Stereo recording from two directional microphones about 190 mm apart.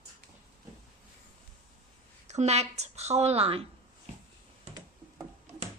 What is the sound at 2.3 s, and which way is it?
Speech, 35° right (ahead or behind).